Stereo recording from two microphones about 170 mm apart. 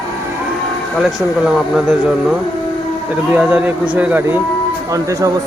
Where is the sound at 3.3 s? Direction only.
10° right (ahead or behind).